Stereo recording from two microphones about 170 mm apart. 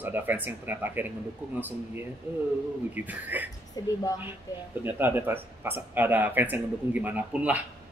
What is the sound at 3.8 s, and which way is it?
Speech, 20° left (ahead or behind).